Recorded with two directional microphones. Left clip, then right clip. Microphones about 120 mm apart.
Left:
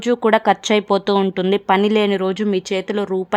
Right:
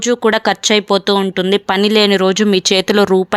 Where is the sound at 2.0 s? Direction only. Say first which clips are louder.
Right 7 dB; 30° right (ahead or behind).